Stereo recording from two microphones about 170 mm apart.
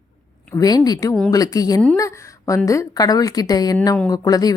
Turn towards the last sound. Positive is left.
turn(degrees=20)  # may be behind; listen again after turning